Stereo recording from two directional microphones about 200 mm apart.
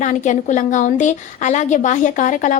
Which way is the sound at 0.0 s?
40° left (ahead or behind).